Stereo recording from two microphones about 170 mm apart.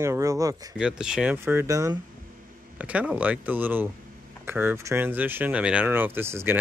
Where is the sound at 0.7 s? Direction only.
5° right (ahead or behind).